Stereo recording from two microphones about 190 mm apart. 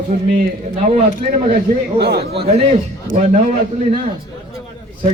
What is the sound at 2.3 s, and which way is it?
A man's voice, 30° right (ahead or behind).